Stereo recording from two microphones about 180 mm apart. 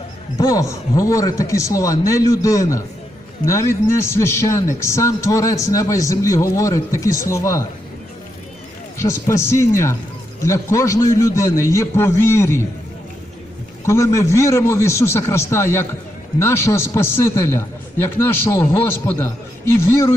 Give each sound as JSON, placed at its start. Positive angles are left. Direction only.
{"t": 0.3, "sound": "a man's voice", "side_deg": 20}
{"t": 9.0, "sound": "speech", "side_deg": 15}
{"t": 13.8, "sound": "speech", "side_deg": 15}